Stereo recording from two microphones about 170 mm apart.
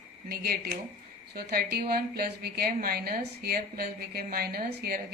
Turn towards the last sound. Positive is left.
turn(degrees=-65)  # may be behind; listen again after turning